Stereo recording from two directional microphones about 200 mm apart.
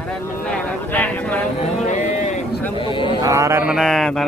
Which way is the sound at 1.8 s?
35° left (ahead or behind).